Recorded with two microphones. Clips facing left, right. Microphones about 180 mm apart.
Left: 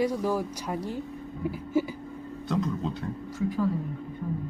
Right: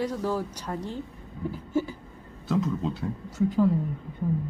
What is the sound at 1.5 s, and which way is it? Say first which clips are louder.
Humming: even; 10° left (ahead or behind).